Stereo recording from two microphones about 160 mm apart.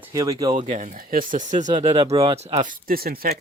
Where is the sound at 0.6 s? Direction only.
50° right (ahead or behind); by 3.3 s 65° right (ahead or behind).